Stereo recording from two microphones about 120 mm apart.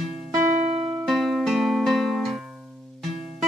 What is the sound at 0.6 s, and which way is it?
Music, 55° right (ahead or behind).